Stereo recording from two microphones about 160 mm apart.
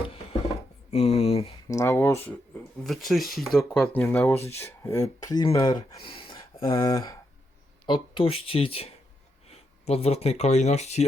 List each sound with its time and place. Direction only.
0.1 s a sound: 40° left (ahead or behind)
1.6 s speech: 20° left (ahead or behind)
2.8 s speech: centre (ahead or behind); by 11.0 s 45° left (ahead or behind)